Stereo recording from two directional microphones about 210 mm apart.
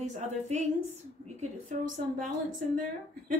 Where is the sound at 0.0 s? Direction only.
35° right (ahead or behind).